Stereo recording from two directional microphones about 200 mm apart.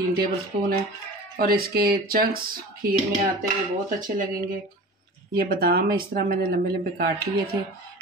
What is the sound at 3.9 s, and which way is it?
Speech, 40° right (ahead or behind).